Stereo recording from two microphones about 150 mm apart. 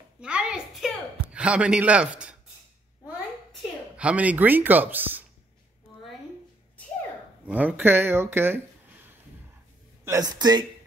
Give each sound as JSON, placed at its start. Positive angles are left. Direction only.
{"t": 0.2, "sound": "a sound", "side_deg": -5}
{"t": 3.9, "sound": "speech", "side_deg": -10}
{"t": 7.4, "sound": "speech", "side_deg": -10}
{"t": 10.0, "sound": "speech", "side_deg": -25}